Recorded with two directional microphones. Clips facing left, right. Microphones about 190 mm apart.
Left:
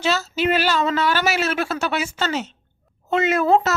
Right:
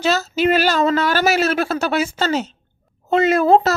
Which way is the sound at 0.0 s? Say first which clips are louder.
Right 4 dB; 40° right (ahead or behind).